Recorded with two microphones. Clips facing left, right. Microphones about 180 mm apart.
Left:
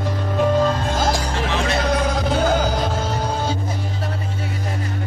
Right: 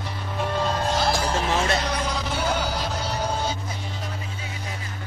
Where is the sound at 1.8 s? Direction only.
50° left (ahead or behind).